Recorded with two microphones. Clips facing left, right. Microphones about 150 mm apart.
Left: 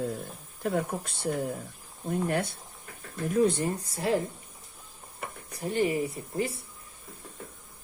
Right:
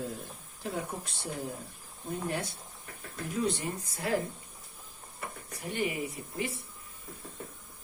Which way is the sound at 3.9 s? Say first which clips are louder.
Left 3 dB; 30° left (ahead or behind).